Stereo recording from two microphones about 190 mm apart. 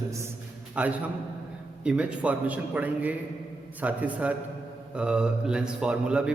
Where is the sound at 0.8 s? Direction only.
5° right (ahead or behind).